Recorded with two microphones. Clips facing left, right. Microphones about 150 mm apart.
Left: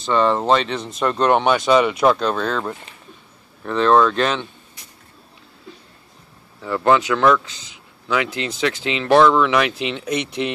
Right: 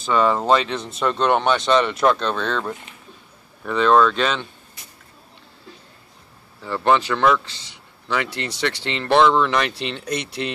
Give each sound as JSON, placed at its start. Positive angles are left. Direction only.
{"t": 0.0, "sound": "speech", "side_deg": -5}
{"t": 6.6, "sound": "speech", "side_deg": 0}
{"t": 8.6, "sound": "speech", "side_deg": 5}